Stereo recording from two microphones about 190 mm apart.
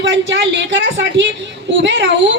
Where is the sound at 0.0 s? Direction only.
70° right (ahead or behind).